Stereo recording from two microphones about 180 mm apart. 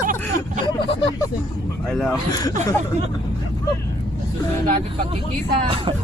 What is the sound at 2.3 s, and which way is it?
Speech, 20° left (ahead or behind).